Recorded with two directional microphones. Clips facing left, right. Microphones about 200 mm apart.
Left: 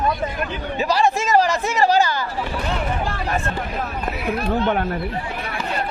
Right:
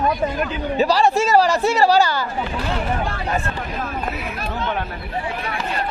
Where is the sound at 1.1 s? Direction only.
35° right (ahead or behind).